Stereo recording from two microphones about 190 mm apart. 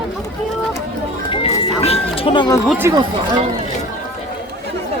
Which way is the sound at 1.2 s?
30° left (ahead or behind).